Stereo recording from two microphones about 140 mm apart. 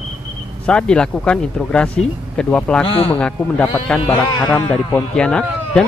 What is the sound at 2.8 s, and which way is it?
Speech, 40° left (ahead or behind).